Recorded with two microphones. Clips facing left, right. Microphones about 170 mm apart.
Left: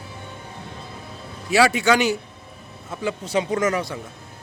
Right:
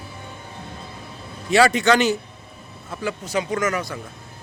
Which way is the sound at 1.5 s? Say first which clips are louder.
Right 1 dB; 5° left (ahead or behind).